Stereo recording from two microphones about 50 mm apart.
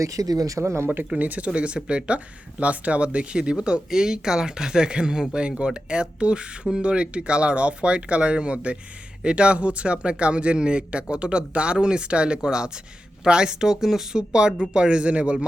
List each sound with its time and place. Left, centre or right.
0.5 s speech: right
1.1 s speech: right